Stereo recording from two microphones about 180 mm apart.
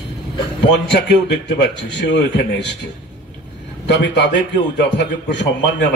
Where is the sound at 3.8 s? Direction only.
75° left (ahead or behind).